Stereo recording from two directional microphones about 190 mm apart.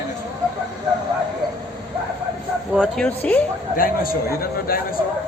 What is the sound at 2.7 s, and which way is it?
Speech, 5° left (ahead or behind).